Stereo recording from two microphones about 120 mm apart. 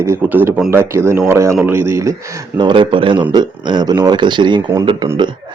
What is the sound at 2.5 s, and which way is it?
Speech, 40° right (ahead or behind).